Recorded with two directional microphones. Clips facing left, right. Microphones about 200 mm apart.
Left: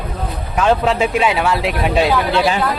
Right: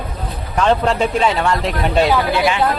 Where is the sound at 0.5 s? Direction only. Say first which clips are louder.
Even; 5° left (ahead or behind).